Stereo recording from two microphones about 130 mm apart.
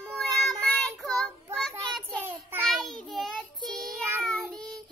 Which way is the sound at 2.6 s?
Centre (ahead or behind).